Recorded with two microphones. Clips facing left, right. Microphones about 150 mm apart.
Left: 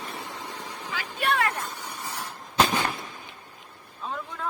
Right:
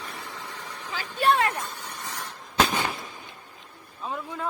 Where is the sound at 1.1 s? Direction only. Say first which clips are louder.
Right 4 dB; 30° right (ahead or behind).